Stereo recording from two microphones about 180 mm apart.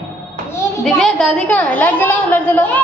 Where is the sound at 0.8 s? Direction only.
Centre (ahead or behind).